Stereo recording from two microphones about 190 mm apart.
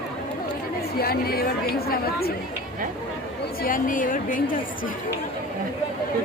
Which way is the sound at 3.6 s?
45° left (ahead or behind).